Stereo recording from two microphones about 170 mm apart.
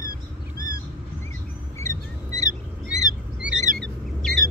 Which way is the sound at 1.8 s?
20° left (ahead or behind).